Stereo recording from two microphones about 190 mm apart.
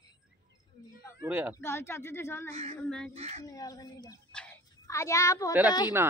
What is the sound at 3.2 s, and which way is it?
Speech, 35° right (ahead or behind).